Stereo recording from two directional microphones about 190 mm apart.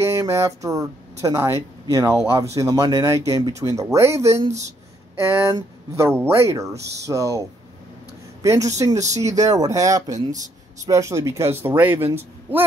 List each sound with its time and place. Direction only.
0.0 s speech: 15° right (ahead or behind)
10.0 s speech: 40° right (ahead or behind)
10.9 s speech: 15° right (ahead or behind)